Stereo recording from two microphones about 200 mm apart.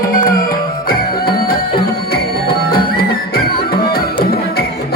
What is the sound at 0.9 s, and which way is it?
Music, 50° left (ahead or behind).